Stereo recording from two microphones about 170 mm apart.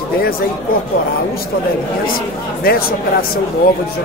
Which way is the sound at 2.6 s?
60° left (ahead or behind).